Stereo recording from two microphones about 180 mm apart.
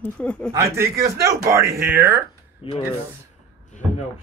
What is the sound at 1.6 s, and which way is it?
Speech, 55° right (ahead or behind).